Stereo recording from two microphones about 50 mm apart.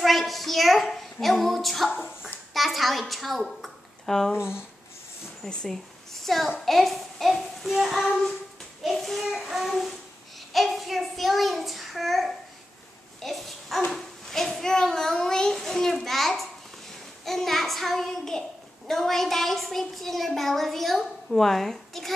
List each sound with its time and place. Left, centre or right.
0.0 s a woman's voice: centre
5.5 s a child's voice: centre
6.1 s a child's voice: centre
9.2 s a woman's voice: centre